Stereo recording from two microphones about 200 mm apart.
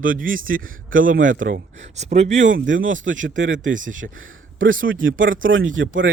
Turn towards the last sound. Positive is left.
turn(degrees=-75)  # may be behind; listen again after turning